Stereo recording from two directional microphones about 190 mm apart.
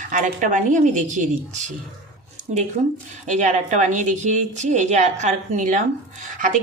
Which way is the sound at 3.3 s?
40° right (ahead or behind).